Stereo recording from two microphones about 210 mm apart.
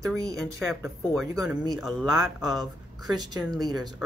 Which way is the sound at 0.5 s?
Centre (ahead or behind).